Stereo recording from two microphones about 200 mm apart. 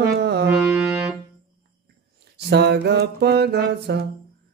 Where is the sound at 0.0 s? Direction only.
55° right (ahead or behind).